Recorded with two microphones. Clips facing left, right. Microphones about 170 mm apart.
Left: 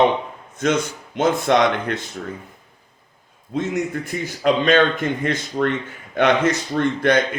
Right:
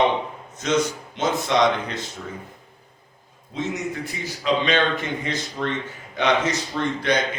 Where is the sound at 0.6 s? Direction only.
55° left (ahead or behind).